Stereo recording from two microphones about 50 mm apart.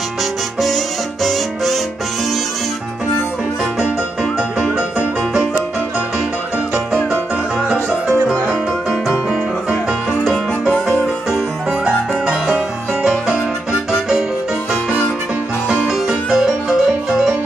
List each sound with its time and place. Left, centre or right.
0.2 s music: centre
4.2 s music: centre
7.6 s music: right
9.3 s music: centre
12.3 s music: centre
15.7 s music: centre